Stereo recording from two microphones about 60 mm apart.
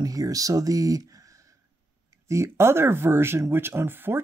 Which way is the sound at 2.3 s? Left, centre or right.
Right.